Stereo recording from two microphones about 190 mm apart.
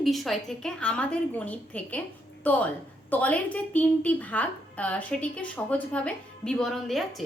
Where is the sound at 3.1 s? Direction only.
10° left (ahead or behind).